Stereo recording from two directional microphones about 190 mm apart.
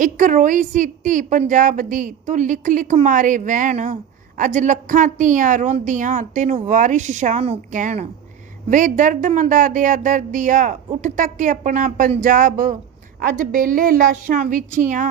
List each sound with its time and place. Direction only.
0.0 s a woman's voice: 40° right (ahead or behind)